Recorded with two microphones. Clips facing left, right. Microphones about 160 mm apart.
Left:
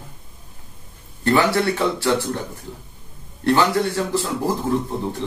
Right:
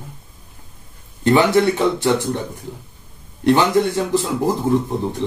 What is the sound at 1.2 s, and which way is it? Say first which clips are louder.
A man's voice: right 4 dB; 20° right (ahead or behind).